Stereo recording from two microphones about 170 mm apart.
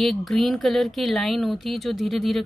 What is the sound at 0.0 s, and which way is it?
Speech, centre (ahead or behind).